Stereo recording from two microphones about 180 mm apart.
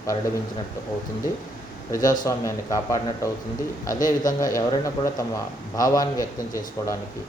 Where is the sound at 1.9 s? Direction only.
20° left (ahead or behind).